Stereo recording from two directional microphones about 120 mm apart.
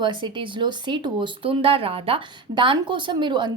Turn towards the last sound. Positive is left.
turn(degrees=-40)  # may be behind; listen again after turning